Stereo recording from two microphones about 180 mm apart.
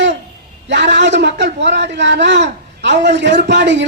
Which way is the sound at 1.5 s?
75° right (ahead or behind).